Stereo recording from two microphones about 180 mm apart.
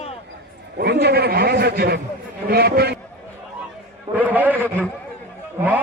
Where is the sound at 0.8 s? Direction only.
65° right (ahead or behind).